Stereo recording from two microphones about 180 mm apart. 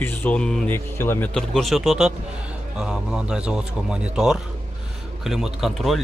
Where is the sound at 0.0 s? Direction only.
10° left (ahead or behind).